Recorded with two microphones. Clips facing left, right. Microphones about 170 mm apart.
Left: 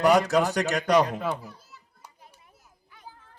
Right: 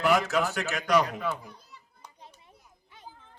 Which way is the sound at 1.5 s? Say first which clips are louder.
Left 2 dB; 5° left (ahead or behind).